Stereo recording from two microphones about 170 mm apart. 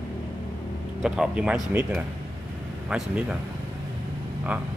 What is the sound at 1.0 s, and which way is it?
Speech, 5° right (ahead or behind).